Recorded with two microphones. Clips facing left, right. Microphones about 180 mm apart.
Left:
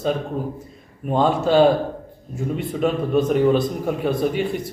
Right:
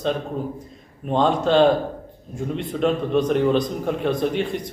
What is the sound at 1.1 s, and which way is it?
A man's voice, 5° left (ahead or behind).